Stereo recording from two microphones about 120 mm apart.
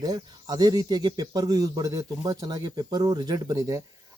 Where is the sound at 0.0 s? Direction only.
30° right (ahead or behind).